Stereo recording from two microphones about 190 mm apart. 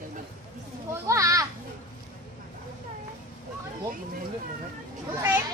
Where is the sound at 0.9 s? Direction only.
15° right (ahead or behind).